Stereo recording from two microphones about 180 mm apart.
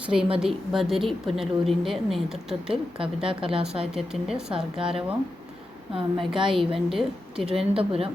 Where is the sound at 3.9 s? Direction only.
5° right (ahead or behind).